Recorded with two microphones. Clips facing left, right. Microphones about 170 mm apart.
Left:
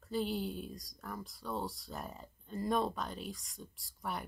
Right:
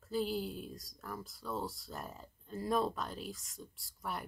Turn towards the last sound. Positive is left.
turn(degrees=0)  # may be behind; listen again after turning